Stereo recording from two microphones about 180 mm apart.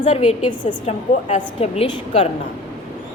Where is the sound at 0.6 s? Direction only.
25° left (ahead or behind).